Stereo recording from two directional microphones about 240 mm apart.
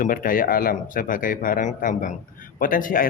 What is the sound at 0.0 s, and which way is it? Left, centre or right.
A man's voice, left.